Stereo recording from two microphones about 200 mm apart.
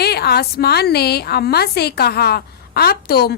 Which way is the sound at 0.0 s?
55° left (ahead or behind).